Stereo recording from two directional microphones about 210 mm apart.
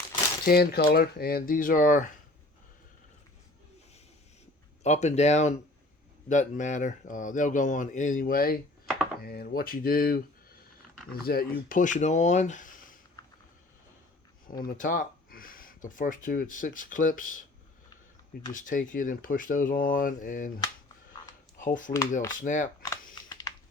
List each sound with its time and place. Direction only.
0.4 s speech: 45° left (ahead or behind)
4.8 s speech: 35° left (ahead or behind)
14.4 s speech: 40° left (ahead or behind)
18.5 s speech: 40° left (ahead or behind)
21.6 s speech: 40° left (ahead or behind)
23.3 s a sound: 20° left (ahead or behind)